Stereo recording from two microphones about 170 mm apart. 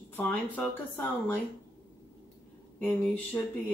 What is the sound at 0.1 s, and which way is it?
Speech, 10° left (ahead or behind).